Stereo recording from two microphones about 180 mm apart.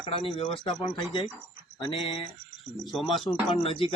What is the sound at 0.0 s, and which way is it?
Speech, 30° left (ahead or behind).